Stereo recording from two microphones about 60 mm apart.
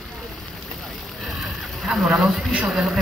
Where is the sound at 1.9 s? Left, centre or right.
Centre.